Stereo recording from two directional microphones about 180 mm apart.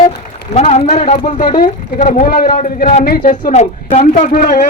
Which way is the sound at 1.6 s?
55° left (ahead or behind).